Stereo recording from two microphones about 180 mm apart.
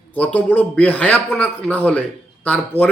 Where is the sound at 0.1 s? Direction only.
5° left (ahead or behind).